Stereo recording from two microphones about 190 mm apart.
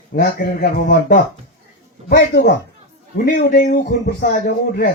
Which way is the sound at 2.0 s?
60° left (ahead or behind).